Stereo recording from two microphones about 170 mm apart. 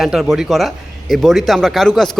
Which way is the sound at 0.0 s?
Centre (ahead or behind).